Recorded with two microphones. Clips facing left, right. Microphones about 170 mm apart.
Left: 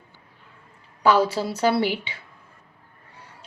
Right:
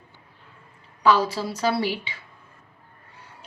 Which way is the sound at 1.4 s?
35° left (ahead or behind).